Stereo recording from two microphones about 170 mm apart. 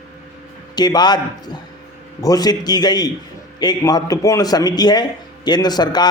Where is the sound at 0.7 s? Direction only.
25° left (ahead or behind).